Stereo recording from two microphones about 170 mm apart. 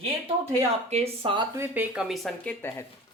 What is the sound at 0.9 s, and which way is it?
Speech, 35° right (ahead or behind).